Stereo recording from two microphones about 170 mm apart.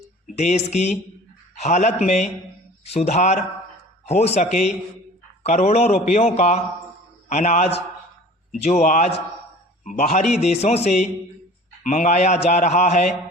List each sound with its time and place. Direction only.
0.3 s a man's voice: 40° left (ahead or behind)